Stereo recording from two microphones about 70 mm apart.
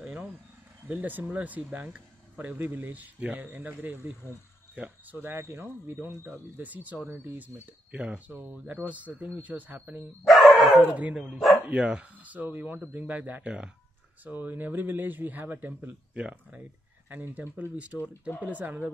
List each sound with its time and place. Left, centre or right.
0.0 s insect: centre
0.8 s a man's voice: right
4.2 s speech: left
4.7 s a man's voice: centre
5.2 s speech: right
6.6 s a man's voice: right
8.3 s a man's voice: right
10.2 s dog: centre
11.0 s a man's voice: centre